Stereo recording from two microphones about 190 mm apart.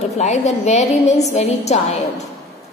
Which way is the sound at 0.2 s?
35° left (ahead or behind).